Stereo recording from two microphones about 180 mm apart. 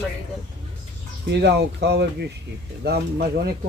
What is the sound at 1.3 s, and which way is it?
Speech, 70° right (ahead or behind).